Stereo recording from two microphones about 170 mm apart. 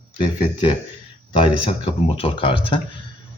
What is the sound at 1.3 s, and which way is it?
Speech, 30° left (ahead or behind).